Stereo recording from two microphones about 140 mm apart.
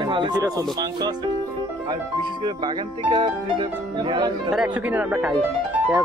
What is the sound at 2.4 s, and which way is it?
Speech, 30° right (ahead or behind).